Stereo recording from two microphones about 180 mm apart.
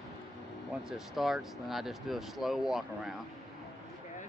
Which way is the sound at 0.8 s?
Centre (ahead or behind).